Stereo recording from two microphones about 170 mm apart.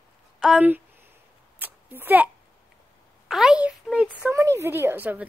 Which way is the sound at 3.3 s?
5° right (ahead or behind).